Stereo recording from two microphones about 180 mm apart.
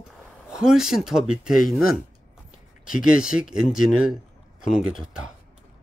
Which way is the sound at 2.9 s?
5° right (ahead or behind).